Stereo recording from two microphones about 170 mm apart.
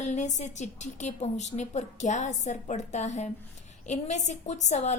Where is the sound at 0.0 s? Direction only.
45° left (ahead or behind).